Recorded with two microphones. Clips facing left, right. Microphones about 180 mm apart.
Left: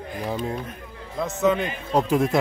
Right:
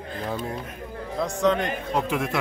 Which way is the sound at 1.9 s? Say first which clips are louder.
Left 7 dB; 35° left (ahead or behind).